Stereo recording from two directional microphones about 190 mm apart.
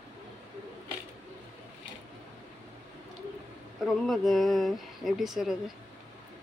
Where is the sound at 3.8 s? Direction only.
Centre (ahead or behind).